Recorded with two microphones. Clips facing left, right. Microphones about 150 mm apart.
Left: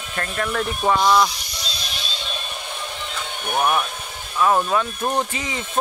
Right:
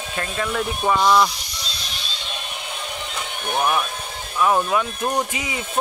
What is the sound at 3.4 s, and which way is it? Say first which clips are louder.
Speech: left 1 dB; 10° left (ahead or behind).